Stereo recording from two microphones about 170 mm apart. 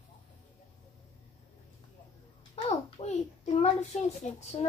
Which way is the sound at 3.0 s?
30° left (ahead or behind).